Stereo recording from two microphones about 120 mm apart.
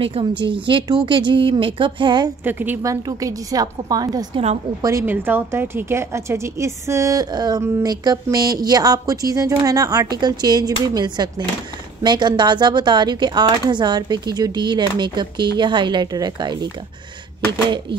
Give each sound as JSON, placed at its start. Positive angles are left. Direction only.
{"t": 0.0, "sound": "a woman's voice", "side_deg": -50}
{"t": 2.4, "sound": "a woman's voice", "side_deg": -15}
{"t": 2.8, "sound": "speech", "side_deg": -30}
{"t": 4.8, "sound": "a woman's voice", "side_deg": -20}
{"t": 7.6, "sound": "a woman's voice", "side_deg": -20}
{"t": 7.9, "sound": "speech", "side_deg": -35}